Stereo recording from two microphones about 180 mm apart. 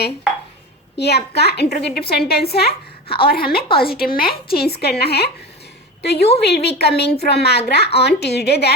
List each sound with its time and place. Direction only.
0.9 s a woman's voice: 65° left (ahead or behind)